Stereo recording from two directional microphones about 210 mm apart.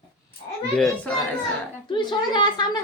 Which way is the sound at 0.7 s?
5° left (ahead or behind).